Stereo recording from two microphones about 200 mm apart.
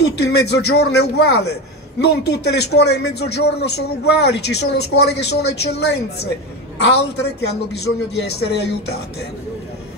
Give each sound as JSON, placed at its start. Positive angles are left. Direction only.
{"t": 0.0, "sound": "a man's voice", "side_deg": 55}